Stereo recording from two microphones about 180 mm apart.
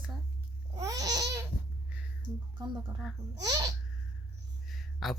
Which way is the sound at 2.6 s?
20° right (ahead or behind).